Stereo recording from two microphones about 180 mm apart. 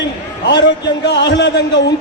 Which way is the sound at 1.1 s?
75° left (ahead or behind).